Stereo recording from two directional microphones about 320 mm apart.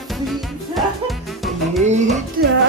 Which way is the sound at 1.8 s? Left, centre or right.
Right.